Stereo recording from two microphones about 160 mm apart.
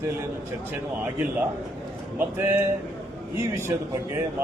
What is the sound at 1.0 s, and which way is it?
A man's voice, 10° right (ahead or behind).